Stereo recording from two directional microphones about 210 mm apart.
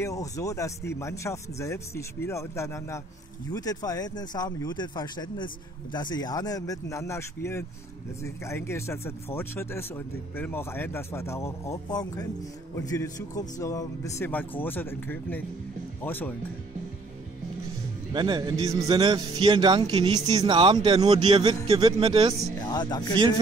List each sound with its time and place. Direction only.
0.0 s speech: 15° left (ahead or behind)
18.1 s speech: 20° right (ahead or behind)
22.7 s speech: 20° left (ahead or behind)